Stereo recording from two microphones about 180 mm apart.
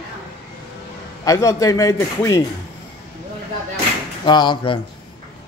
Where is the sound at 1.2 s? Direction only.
20° left (ahead or behind).